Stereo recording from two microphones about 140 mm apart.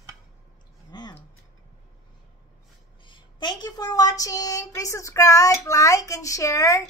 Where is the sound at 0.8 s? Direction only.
30° left (ahead or behind).